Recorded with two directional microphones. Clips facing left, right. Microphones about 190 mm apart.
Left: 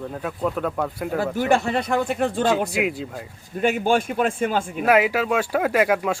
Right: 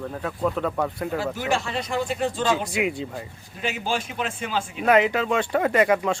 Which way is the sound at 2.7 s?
5° left (ahead or behind).